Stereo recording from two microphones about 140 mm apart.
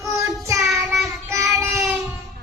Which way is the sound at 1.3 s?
20° right (ahead or behind).